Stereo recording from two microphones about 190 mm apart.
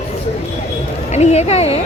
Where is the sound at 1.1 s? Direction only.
35° left (ahead or behind).